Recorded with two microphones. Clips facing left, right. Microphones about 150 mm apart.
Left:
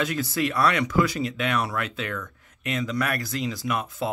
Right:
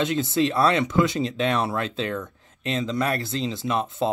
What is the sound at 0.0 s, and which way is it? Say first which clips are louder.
Speech: right 4 dB; 25° right (ahead or behind).